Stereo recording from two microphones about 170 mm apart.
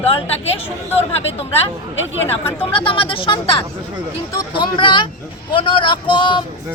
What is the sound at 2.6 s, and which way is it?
A woman's voice, 30° left (ahead or behind).